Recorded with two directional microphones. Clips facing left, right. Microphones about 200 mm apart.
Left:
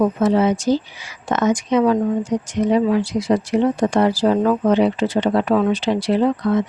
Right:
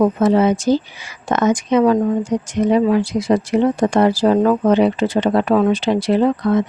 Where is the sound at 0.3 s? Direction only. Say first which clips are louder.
Right 2 dB; 55° right (ahead or behind).